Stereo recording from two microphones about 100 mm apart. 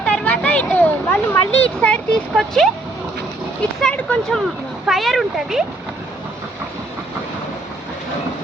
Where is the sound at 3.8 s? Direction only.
10° left (ahead or behind).